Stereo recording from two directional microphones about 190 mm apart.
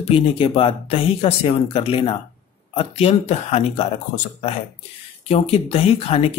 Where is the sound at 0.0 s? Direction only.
35° left (ahead or behind).